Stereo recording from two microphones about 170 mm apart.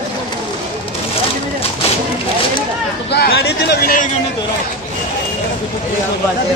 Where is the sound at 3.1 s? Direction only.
75° left (ahead or behind).